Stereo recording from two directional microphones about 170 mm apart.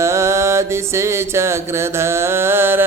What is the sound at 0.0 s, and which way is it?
Music, 15° right (ahead or behind).